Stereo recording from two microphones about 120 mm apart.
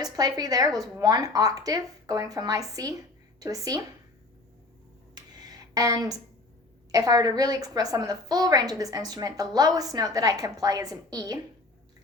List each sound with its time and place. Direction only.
0.0 s a woman's voice: 30° right (ahead or behind)
5.1 s a sound: 35° right (ahead or behind)
6.9 s a woman's voice: 30° right (ahead or behind)